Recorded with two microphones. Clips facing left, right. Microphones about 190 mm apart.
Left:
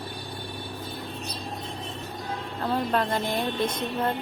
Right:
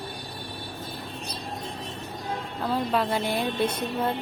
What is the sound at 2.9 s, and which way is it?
Speech, 5° right (ahead or behind).